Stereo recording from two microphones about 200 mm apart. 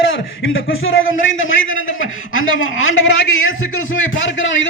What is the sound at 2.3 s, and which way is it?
A man's voice, 85° left.